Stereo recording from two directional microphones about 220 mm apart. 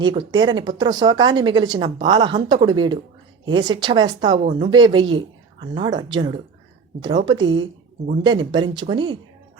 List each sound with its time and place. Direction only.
0.0 s speech: 20° right (ahead or behind)
4.4 s speech: 30° right (ahead or behind)
4.7 s a woman's voice: 20° right (ahead or behind)